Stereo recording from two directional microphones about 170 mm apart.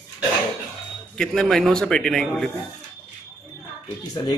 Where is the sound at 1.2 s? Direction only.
5° left (ahead or behind).